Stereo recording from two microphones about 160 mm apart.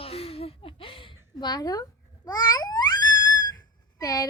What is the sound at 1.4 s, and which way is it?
Babbling, 25° left (ahead or behind).